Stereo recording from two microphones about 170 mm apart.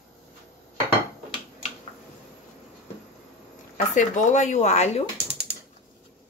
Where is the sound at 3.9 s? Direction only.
45° left (ahead or behind).